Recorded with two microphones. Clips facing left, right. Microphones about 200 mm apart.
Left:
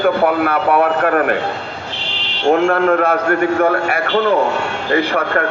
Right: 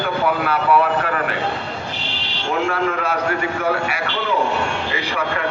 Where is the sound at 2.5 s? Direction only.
55° left (ahead or behind).